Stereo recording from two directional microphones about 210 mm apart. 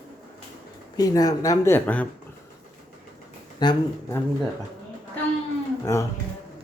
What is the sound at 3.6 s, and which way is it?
Speech, 20° left (ahead or behind).